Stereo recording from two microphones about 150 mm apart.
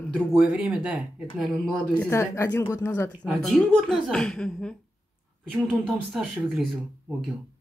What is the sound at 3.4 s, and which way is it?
A woman's voice, centre (ahead or behind).